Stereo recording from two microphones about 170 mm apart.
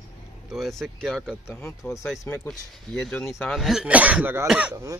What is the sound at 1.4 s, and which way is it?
Speech, 15° left (ahead or behind).